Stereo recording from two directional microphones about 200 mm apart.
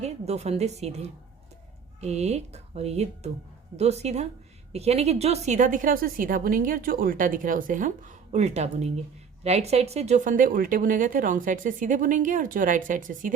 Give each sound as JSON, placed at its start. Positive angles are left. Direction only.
{"t": 0.0, "sound": "a woman's voice", "side_deg": -30}